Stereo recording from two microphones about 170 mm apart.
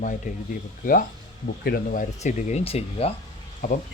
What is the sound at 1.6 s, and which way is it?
Speech, 60° left (ahead or behind).